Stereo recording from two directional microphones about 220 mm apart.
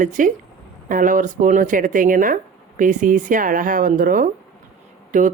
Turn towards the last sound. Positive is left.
turn(degrees=-35)  # may be behind; listen again after turning